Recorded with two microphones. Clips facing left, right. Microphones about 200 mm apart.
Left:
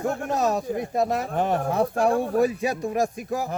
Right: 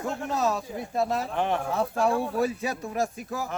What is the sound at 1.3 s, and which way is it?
Speech, 40° left (ahead or behind).